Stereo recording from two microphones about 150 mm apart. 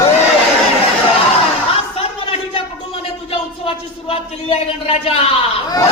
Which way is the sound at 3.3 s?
40° left (ahead or behind).